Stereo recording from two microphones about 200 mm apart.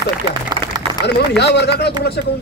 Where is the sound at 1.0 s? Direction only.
55° left (ahead or behind).